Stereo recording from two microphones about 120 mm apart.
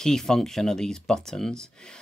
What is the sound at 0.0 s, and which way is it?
Speech, 5° left (ahead or behind).